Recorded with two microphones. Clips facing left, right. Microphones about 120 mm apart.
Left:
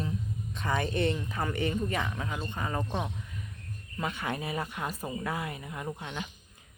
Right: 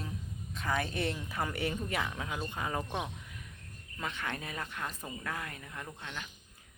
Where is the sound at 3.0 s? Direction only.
Centre (ahead or behind).